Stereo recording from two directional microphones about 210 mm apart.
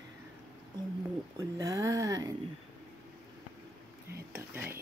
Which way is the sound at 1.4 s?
15° right (ahead or behind).